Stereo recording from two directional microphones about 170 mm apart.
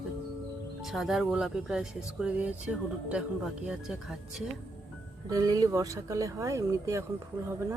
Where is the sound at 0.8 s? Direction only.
Centre (ahead or behind).